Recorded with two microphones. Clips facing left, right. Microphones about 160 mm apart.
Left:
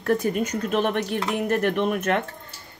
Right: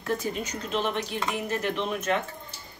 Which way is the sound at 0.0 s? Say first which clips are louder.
Left 7 dB; 55° left (ahead or behind).